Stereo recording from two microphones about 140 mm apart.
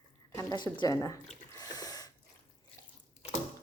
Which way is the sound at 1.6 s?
25° left (ahead or behind).